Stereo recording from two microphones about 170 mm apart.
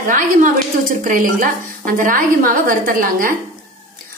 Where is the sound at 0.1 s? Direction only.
50° right (ahead or behind).